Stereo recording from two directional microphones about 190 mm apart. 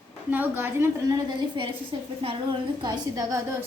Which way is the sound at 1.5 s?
25° right (ahead or behind).